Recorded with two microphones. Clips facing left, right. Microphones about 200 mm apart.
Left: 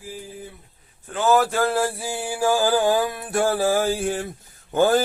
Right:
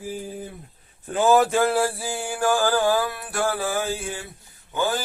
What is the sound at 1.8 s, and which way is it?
Music, 5° left (ahead or behind).